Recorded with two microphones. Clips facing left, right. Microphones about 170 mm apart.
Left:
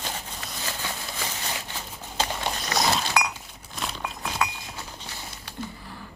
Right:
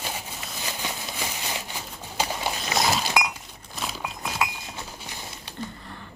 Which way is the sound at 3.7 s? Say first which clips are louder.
Even; 5° right (ahead or behind).